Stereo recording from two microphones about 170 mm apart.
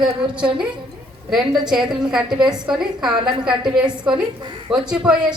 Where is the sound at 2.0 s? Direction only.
5° right (ahead or behind).